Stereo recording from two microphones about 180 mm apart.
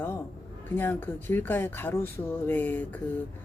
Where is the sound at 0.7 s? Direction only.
10° left (ahead or behind).